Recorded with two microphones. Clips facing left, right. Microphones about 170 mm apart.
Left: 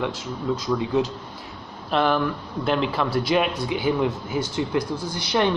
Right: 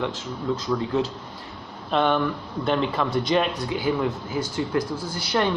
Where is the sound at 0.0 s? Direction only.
10° left (ahead or behind).